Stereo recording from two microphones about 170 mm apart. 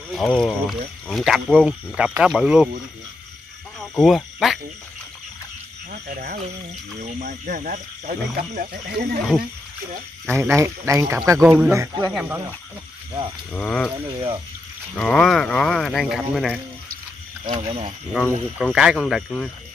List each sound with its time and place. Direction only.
0.1 s speech: centre (ahead or behind)
3.9 s speech: centre (ahead or behind)
5.9 s frog: 55° right (ahead or behind)
7.0 s speech: 45° right (ahead or behind)
10.2 s speech: 15° right (ahead or behind)
12.1 s speech: 5° right (ahead or behind)
13.5 s speech: 5° left (ahead or behind)
14.1 s speech: 35° right (ahead or behind)
15.0 s speech: centre (ahead or behind)
17.5 s speech: 35° right (ahead or behind)
18.6 s speech: 5° right (ahead or behind)